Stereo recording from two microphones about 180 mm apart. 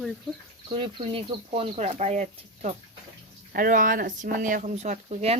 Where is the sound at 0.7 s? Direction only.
30° right (ahead or behind).